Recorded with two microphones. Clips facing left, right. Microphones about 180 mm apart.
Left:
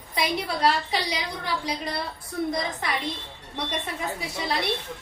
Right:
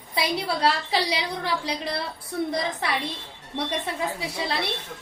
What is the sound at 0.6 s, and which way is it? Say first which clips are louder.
Speech: left 1 dB; 30° right (ahead or behind).